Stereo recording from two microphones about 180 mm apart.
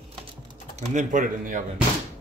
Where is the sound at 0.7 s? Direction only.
45° right (ahead or behind).